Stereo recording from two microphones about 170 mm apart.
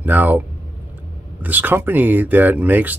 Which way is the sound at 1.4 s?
10° right (ahead or behind).